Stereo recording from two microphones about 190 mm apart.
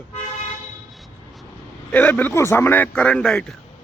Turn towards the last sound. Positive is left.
turn(degrees=5)  # may be behind; listen again after turning